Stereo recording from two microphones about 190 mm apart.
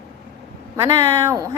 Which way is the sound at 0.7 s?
15° right (ahead or behind).